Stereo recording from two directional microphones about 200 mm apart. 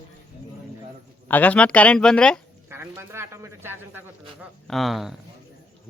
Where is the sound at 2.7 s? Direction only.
10° right (ahead or behind).